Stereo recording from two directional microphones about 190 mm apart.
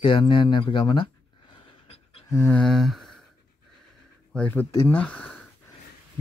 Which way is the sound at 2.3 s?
15° left (ahead or behind).